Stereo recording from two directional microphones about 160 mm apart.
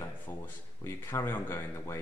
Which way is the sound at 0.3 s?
15° left (ahead or behind).